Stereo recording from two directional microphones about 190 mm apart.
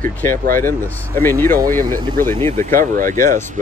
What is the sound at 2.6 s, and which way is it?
Speech, 45° right (ahead or behind).